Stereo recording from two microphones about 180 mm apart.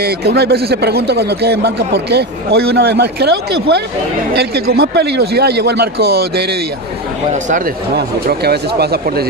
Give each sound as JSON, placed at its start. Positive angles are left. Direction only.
{"t": 0.0, "sound": "a man's voice", "side_deg": -65}
{"t": 7.9, "sound": "a man's voice", "side_deg": -60}